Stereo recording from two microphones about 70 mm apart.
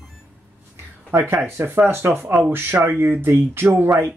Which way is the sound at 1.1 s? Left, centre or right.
Right.